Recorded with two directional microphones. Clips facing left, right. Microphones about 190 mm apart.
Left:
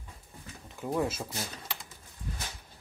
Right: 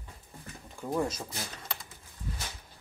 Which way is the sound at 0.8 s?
5° left (ahead or behind).